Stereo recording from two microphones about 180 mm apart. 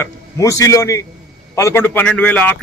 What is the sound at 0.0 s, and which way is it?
A man's voice, 15° left (ahead or behind).